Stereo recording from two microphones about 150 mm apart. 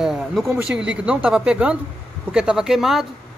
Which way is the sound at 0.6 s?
5° right (ahead or behind).